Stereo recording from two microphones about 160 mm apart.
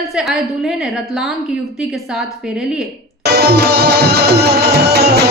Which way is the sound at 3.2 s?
90° right.